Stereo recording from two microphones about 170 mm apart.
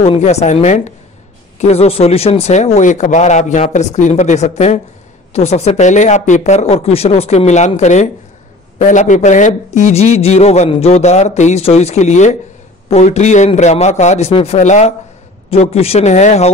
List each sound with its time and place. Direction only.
0.0 s speech: 35° left (ahead or behind)